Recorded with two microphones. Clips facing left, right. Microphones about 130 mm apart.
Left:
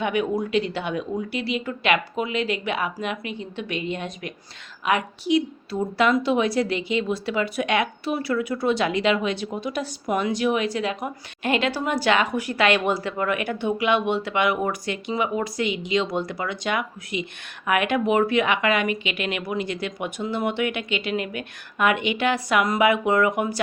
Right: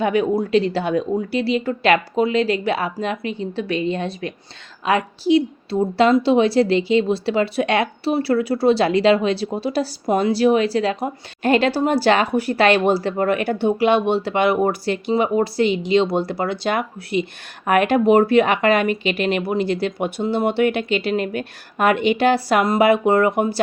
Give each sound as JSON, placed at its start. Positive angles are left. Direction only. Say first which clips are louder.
{"t": 0.0, "sound": "a woman's voice", "louder": "right 5 dB", "side_deg": -35}